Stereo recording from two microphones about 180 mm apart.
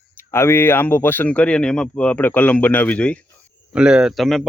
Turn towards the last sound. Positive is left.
turn(degrees=0)  # may be behind; listen again after turning